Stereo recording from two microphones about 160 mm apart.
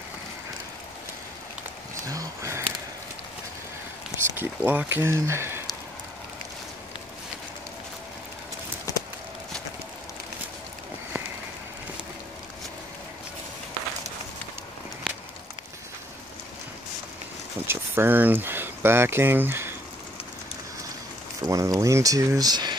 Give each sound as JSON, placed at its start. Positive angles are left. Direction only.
{"t": 2.0, "sound": "a sound", "side_deg": -20}
{"t": 4.4, "sound": "speech", "side_deg": -10}
{"t": 8.9, "sound": "clip-clop", "side_deg": 20}
{"t": 17.6, "sound": "speech", "side_deg": -15}
{"t": 21.5, "sound": "speech", "side_deg": -20}